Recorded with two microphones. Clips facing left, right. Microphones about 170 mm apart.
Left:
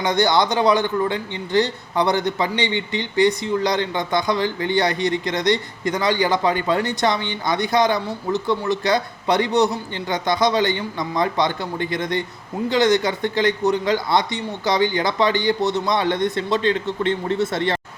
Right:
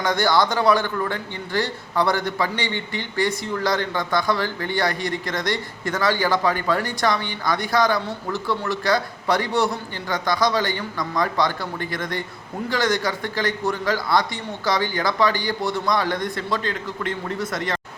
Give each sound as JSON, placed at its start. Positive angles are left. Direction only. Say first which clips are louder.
{"t": 0.0, "sound": "speech", "louder": "left 2 dB", "side_deg": 20}